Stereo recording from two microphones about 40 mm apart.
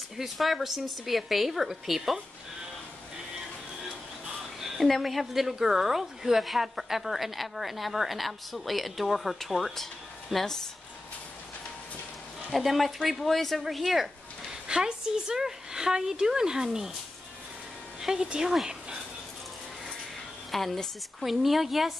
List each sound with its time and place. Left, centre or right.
0.2 s a woman's voice: centre
4.6 s a sound: centre
4.8 s a woman's voice: centre
12.5 s a woman's voice: centre
14.7 s a woman's voice: centre
18.0 s a woman's voice: centre
20.5 s a woman's voice: centre